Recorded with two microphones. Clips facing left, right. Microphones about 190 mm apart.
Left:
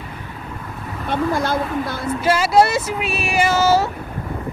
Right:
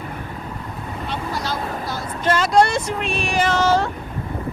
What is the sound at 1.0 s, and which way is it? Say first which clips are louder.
A woman's voice: left 8 dB; 50° left (ahead or behind).